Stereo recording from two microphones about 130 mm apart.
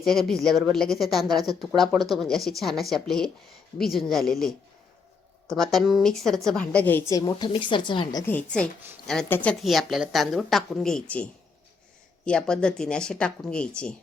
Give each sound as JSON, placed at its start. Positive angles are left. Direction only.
{"t": 0.0, "sound": "a woman's voice", "side_deg": 5}
{"t": 7.1, "sound": "a woman's voice", "side_deg": 30}
{"t": 8.3, "sound": "speech", "side_deg": 10}
{"t": 9.6, "sound": "a woman's voice", "side_deg": 0}
{"t": 12.2, "sound": "speech", "side_deg": 5}